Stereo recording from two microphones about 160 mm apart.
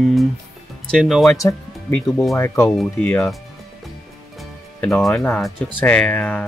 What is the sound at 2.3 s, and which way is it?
Speech, 15° left (ahead or behind).